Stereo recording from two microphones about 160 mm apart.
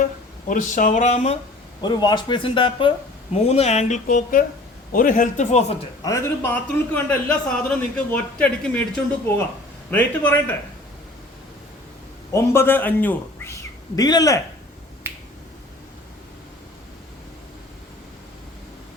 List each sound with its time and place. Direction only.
0.0 s speech: 55° left (ahead or behind)
1.8 s a man's voice: 25° left (ahead or behind); by 5.7 s 45° left (ahead or behind)
6.0 s a man's voice: 20° left (ahead or behind)
9.9 s a man's voice: 10° left (ahead or behind)
12.3 s speech: 15° left (ahead or behind)
15.1 s finger snapping: 15° right (ahead or behind)